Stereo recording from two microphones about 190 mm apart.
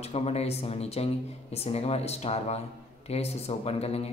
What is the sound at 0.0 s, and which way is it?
A man's voice, 30° left (ahead or behind).